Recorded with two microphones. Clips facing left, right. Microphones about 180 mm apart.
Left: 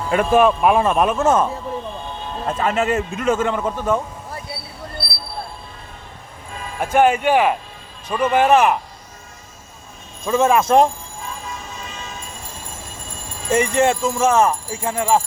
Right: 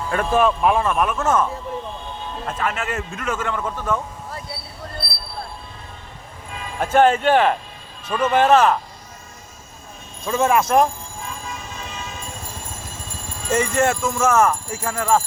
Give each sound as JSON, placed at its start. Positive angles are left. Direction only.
{"t": 0.1, "sound": "speech", "side_deg": 15}
{"t": 2.5, "sound": "a man's voice", "side_deg": 30}
{"t": 6.7, "sound": "speech", "side_deg": 10}
{"t": 10.2, "sound": "a man's voice", "side_deg": 25}
{"t": 13.5, "sound": "speech", "side_deg": 15}